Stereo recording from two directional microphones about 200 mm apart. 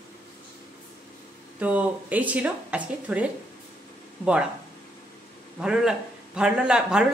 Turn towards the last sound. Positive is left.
turn(degrees=-5)  # may be behind; listen again after turning